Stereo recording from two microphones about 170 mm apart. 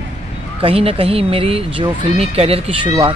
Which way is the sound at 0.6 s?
35° right (ahead or behind).